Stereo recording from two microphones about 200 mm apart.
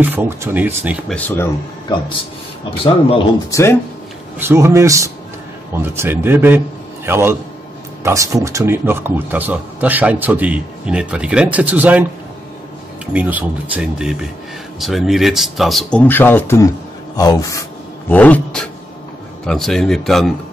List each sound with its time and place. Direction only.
0.0 s a man's voice: 10° right (ahead or behind)
1.1 s speech: 10° left (ahead or behind)
3.4 s speech: 15° left (ahead or behind)
4.4 s a man's voice: 15° right (ahead or behind)